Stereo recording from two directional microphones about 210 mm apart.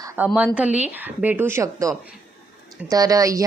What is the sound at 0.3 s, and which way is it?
A woman's voice, 5° right (ahead or behind).